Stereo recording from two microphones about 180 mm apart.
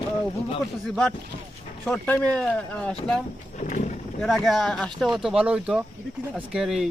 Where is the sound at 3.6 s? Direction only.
45° left (ahead or behind).